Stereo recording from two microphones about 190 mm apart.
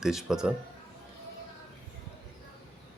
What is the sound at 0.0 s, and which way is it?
Speech, centre (ahead or behind).